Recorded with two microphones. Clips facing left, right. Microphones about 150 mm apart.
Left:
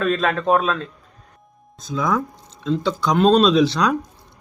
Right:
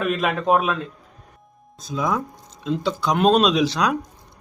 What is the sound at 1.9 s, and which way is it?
Speech, 10° right (ahead or behind).